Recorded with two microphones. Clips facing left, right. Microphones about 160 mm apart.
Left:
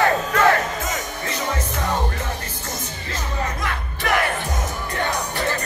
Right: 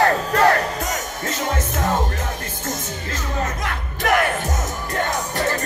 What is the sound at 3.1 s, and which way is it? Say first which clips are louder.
Music: right 1 dB; 45° right (ahead or behind).